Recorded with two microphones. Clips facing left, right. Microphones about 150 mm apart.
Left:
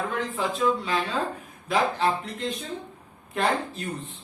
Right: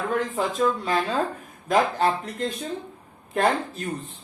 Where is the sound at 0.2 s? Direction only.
45° right (ahead or behind).